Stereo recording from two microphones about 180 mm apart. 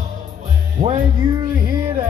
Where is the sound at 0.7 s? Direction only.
50° right (ahead or behind).